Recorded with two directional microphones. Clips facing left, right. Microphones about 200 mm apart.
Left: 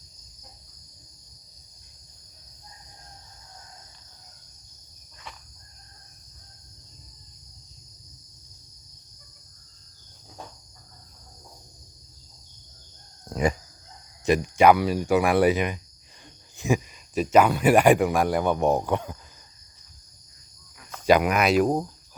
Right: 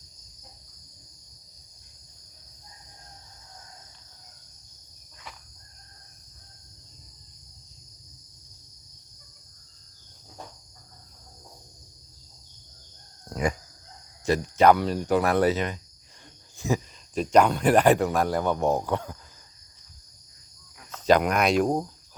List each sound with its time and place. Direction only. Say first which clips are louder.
13.3 s cricket: left 3 dB; 25° left (ahead or behind)
14.3 s speech: left 1 dB; 15° left (ahead or behind)
20.9 s speech: left 1 dB; 10° left (ahead or behind)